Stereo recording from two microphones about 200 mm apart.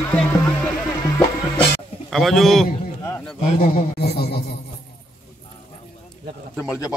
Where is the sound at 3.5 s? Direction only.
35° left (ahead or behind); by 4.5 s 55° left (ahead or behind).